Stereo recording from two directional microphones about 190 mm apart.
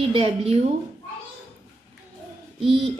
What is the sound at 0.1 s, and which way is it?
Speech, 30° right (ahead or behind).